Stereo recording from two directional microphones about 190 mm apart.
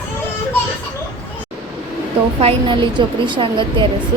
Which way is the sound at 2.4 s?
30° right (ahead or behind).